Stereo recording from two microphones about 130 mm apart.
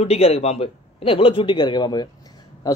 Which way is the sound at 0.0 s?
50° left (ahead or behind).